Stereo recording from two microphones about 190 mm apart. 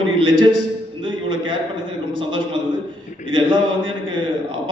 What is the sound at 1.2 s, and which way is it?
A man's voice, 25° right (ahead or behind).